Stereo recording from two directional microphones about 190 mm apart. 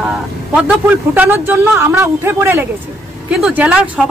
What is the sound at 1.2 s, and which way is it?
A woman's voice, 10° right (ahead or behind).